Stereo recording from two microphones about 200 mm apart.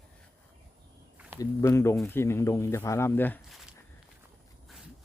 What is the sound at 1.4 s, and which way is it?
Speech, 15° left (ahead or behind).